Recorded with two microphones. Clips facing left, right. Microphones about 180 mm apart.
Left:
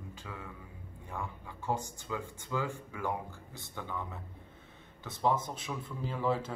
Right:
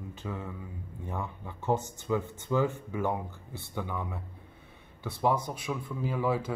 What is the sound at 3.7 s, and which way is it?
Speech, 15° right (ahead or behind).